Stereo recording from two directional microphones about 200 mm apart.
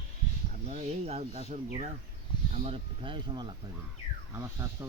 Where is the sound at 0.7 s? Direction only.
35° right (ahead or behind).